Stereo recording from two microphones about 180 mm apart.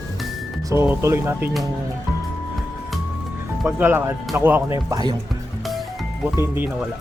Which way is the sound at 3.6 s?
10° right (ahead or behind).